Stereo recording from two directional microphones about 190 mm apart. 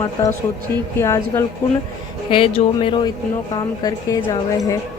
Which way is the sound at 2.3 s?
30° left (ahead or behind).